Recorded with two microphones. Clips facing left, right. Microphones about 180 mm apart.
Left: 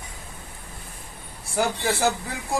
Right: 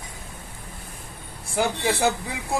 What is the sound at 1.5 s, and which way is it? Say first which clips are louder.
Speech: right 1 dB; 15° right (ahead or behind).